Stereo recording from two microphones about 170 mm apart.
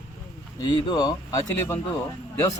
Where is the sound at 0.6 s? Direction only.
25° left (ahead or behind).